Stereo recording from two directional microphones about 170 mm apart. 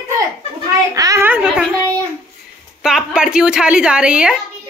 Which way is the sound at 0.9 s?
20° right (ahead or behind).